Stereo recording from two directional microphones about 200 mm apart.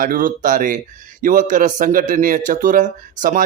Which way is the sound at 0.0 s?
45° right (ahead or behind).